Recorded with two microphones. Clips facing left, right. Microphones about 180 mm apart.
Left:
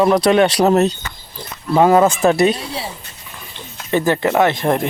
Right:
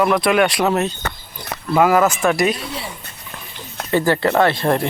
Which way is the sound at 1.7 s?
25° left (ahead or behind).